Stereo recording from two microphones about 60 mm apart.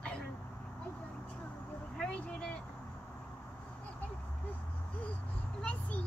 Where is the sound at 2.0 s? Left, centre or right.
Centre.